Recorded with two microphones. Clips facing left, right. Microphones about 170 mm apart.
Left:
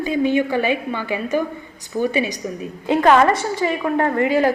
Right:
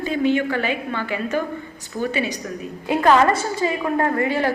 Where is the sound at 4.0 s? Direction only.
20° left (ahead or behind).